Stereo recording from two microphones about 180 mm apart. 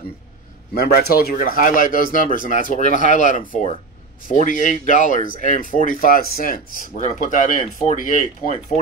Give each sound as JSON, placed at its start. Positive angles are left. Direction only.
{"t": 0.7, "sound": "speech", "side_deg": 60}